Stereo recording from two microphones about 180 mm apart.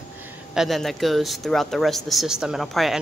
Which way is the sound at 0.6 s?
Centre (ahead or behind).